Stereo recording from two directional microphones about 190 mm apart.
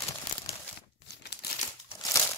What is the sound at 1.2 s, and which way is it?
Crumpling, 60° left (ahead or behind).